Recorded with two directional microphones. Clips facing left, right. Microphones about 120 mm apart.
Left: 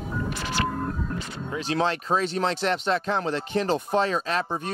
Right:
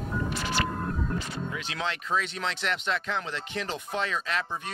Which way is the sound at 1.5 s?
35° left (ahead or behind).